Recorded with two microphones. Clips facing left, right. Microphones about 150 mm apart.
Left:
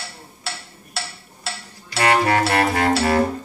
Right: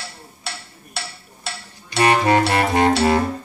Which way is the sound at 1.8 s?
20° right (ahead or behind).